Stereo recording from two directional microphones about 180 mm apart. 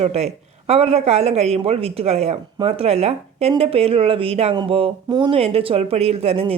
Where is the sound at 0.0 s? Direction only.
35° right (ahead or behind).